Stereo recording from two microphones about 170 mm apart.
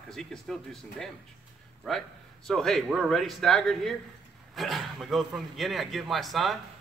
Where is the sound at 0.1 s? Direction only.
5° left (ahead or behind).